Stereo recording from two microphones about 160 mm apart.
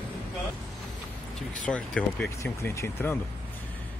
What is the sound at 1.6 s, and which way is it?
Speech, 10° left (ahead or behind).